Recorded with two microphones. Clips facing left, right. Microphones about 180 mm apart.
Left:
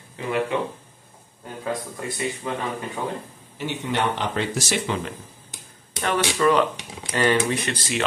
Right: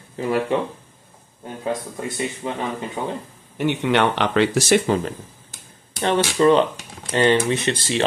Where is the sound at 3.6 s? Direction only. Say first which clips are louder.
Right 7 dB; 70° right (ahead or behind).